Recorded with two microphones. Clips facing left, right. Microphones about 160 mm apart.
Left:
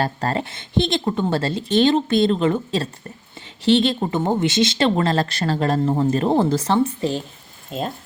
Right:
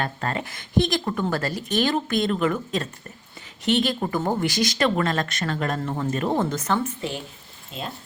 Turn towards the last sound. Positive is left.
turn(degrees=50)  # may be behind; listen again after turning